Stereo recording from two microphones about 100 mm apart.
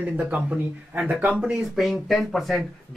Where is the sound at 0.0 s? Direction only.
15° right (ahead or behind).